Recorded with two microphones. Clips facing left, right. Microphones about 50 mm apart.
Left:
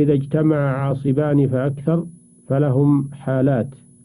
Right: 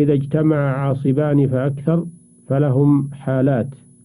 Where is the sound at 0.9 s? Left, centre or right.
Right.